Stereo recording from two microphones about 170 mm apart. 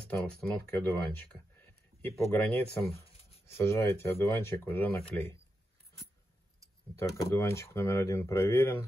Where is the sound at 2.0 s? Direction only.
10° left (ahead or behind).